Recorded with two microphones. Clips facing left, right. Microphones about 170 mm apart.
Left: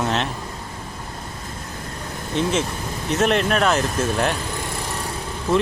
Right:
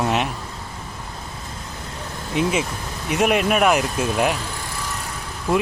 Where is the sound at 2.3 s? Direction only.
10° right (ahead or behind).